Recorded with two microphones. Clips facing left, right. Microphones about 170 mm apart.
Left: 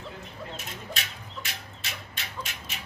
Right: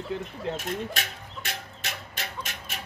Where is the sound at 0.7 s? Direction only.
55° right (ahead or behind).